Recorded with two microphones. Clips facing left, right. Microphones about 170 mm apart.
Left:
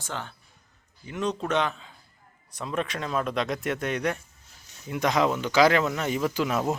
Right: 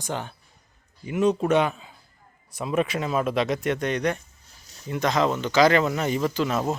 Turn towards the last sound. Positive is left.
turn(degrees=5)  # may be behind; listen again after turning